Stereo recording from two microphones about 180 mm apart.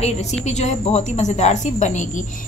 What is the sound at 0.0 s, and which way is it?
A woman's voice, 35° left (ahead or behind).